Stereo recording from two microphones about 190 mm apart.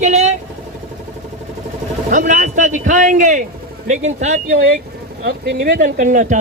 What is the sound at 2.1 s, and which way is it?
Speech, 40° right (ahead or behind).